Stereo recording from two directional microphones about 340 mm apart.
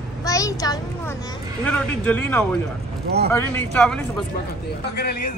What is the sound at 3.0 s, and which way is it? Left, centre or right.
Speech, right.